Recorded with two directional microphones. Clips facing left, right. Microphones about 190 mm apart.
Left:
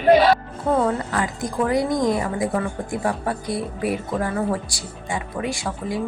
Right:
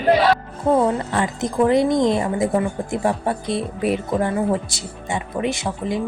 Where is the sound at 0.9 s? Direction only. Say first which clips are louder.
Right 2 dB; 25° right (ahead or behind).